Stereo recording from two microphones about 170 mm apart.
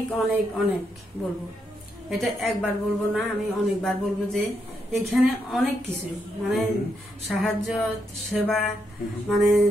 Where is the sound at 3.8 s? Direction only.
Centre (ahead or behind).